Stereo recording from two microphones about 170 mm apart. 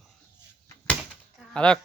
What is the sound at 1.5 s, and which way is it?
Speech, 5° left (ahead or behind).